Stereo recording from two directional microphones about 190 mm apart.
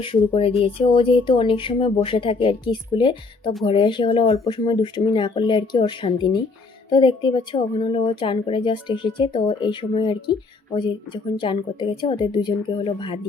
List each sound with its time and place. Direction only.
0.0 s speech: 30° left (ahead or behind)